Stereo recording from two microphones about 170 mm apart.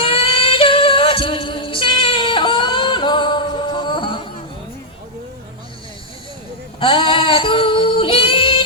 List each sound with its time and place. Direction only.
0.0 s female singing: 30° left (ahead or behind)
6.7 s female singing: 30° left (ahead or behind)